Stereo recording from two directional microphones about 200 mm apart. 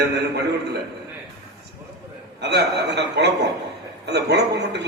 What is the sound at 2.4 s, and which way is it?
A man's voice, 55° right (ahead or behind).